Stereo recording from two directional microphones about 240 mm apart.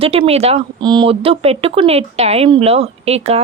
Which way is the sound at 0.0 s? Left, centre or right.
Right.